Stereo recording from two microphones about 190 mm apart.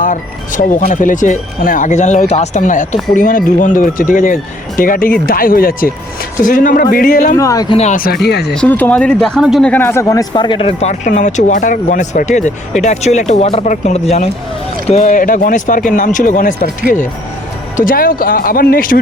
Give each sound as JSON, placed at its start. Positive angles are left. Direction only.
{"t": 0.0, "sound": "speech", "side_deg": 45}
{"t": 7.3, "sound": "speech", "side_deg": 15}
{"t": 7.8, "sound": "speech", "side_deg": 40}
{"t": 8.5, "sound": "speech", "side_deg": 10}
{"t": 17.7, "sound": "speech", "side_deg": 50}